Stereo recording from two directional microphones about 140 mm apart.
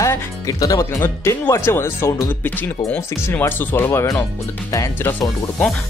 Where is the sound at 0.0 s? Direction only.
25° left (ahead or behind).